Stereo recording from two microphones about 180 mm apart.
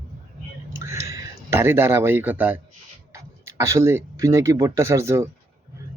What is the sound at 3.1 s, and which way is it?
Speech, 15° right (ahead or behind).